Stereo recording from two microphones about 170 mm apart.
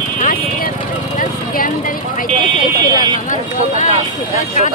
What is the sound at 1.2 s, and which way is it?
Speech, 50° left (ahead or behind).